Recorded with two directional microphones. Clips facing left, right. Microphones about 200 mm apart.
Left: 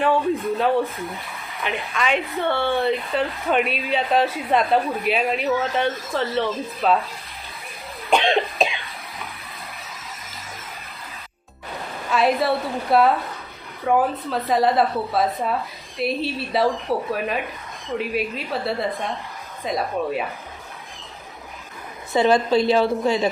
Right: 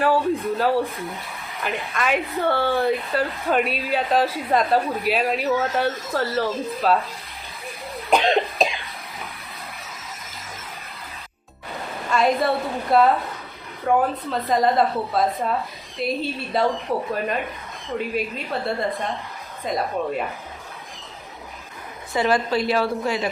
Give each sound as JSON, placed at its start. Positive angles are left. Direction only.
{"t": 0.0, "sound": "a woman's voice", "side_deg": 0}
{"t": 8.1, "sound": "cough", "side_deg": 0}
{"t": 12.1, "sound": "a woman's voice", "side_deg": 0}
{"t": 22.1, "sound": "a woman's voice", "side_deg": 25}